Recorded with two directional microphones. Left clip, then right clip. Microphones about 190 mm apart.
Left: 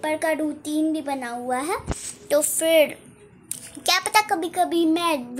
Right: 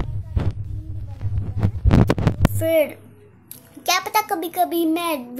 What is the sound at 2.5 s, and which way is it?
A woman's voice, 5° right (ahead or behind).